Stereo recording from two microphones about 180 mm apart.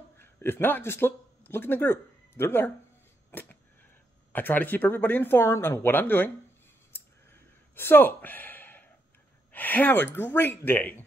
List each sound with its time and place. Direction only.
0.2 s speech: 10° left (ahead or behind)
3.3 s a sound: 10° left (ahead or behind)
4.3 s speech: 10° left (ahead or behind)
7.7 s speech: 10° left (ahead or behind)